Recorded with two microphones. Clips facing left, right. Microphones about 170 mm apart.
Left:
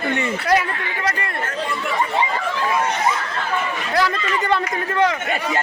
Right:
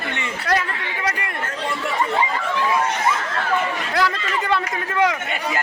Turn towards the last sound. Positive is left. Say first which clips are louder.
# left 1 dB
turn(degrees=-5)  # may be behind; listen again after turning